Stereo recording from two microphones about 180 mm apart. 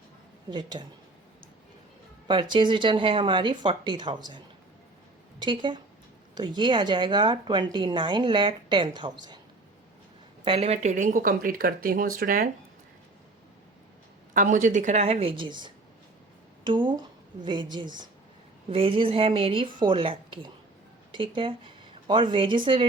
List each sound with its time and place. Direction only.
0.5 s a woman's voice: 25° right (ahead or behind)
2.2 s a woman's voice: 25° right (ahead or behind)
10.4 s speech: 30° right (ahead or behind); by 12.5 s 50° right (ahead or behind)
14.3 s a woman's voice: 45° right (ahead or behind); by 22.9 s 25° right (ahead or behind)